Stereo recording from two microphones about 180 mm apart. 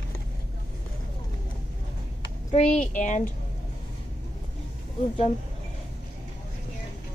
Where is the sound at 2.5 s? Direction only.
40° left (ahead or behind).